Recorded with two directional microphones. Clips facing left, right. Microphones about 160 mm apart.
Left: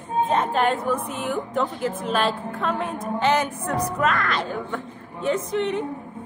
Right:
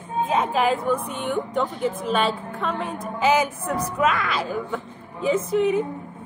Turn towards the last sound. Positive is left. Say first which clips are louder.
# right 4 dB
turn(degrees=0)  # may be behind; listen again after turning